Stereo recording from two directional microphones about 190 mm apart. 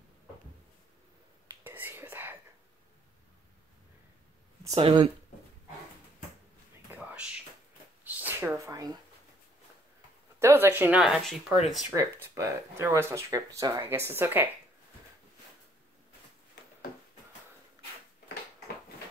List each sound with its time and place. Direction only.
1.5 s whispering: 10° right (ahead or behind)
4.6 s speech: 25° right (ahead or behind)
6.9 s a sound: 10° right (ahead or behind)
10.4 s speech: 15° right (ahead or behind)
11.9 s speech: 15° right (ahead or behind)